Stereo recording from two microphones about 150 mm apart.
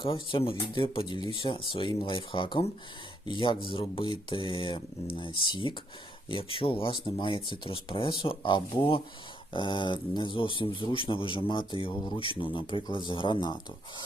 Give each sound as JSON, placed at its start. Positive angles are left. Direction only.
{"t": 0.0, "sound": "a man's voice", "side_deg": 35}